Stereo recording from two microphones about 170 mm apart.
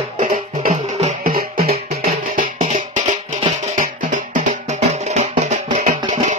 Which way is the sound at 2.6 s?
45° right (ahead or behind).